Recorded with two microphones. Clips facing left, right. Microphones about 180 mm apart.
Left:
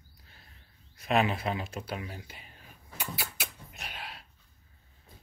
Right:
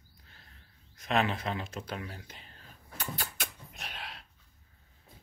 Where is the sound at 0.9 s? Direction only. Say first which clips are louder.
Left 2 dB; 10° left (ahead or behind).